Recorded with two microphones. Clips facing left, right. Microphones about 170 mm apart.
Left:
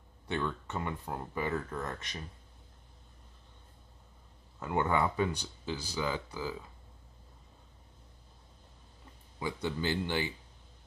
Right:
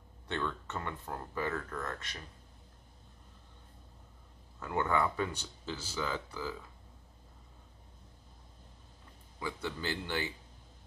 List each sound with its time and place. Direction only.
0.3 s speech: 10° left (ahead or behind)
4.6 s speech: 20° left (ahead or behind)
9.4 s speech: 20° left (ahead or behind)